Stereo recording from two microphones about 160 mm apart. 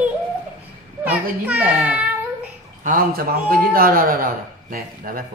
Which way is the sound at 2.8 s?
60° right (ahead or behind).